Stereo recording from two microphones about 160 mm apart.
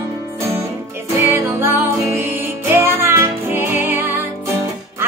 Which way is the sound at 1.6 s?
15° right (ahead or behind).